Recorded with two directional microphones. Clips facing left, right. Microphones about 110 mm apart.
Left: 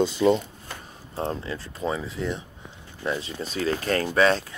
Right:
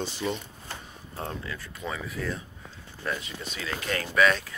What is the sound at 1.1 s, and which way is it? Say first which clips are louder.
Speech: left 6 dB; 30° left (ahead or behind).